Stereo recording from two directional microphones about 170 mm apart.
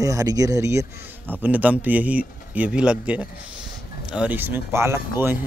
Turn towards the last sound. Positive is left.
turn(degrees=-15)  # may be behind; listen again after turning